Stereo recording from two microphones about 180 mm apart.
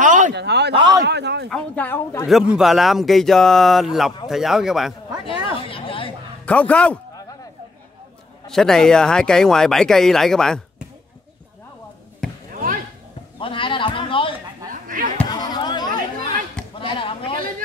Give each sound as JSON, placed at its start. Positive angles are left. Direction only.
{"t": 0.0, "sound": "a sound", "side_deg": -45}
{"t": 0.3, "sound": "speech", "side_deg": -70}
{"t": 0.7, "sound": "a man's voice", "side_deg": -25}
{"t": 1.0, "sound": "a man's voice", "side_deg": -70}
{"t": 1.5, "sound": "speech", "side_deg": 10}
{"t": 2.2, "sound": "speech", "side_deg": -5}
{"t": 5.2, "sound": "chatter", "side_deg": 30}
{"t": 6.4, "sound": "speech", "side_deg": 5}
{"t": 8.5, "sound": "speech", "side_deg": 5}
{"t": 13.4, "sound": "a sound", "side_deg": 30}
{"t": 14.7, "sound": "basketball bounce", "side_deg": -45}
{"t": 15.2, "sound": "a sound", "side_deg": 25}